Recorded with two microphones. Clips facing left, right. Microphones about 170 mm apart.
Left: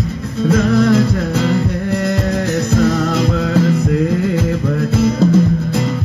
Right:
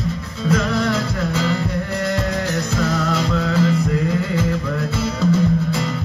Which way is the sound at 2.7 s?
45° left (ahead or behind).